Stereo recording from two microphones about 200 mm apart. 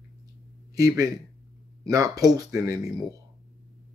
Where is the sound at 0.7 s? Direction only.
15° right (ahead or behind).